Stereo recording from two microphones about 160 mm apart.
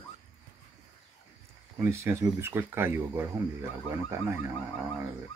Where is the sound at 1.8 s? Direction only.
15° right (ahead or behind).